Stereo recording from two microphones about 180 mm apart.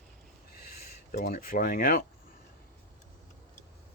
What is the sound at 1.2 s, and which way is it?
Speech, 50° left (ahead or behind).